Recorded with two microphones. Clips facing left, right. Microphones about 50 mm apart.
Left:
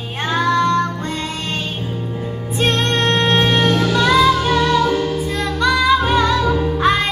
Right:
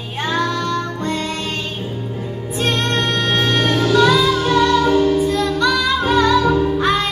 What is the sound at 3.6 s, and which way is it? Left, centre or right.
Music, centre.